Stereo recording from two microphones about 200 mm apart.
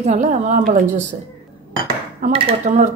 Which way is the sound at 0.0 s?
35° right (ahead or behind).